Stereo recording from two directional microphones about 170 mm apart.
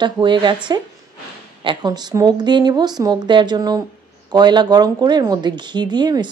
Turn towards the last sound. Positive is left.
turn(degrees=-25)  # may be behind; listen again after turning